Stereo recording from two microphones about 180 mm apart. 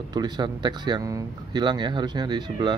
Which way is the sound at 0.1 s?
25° right (ahead or behind).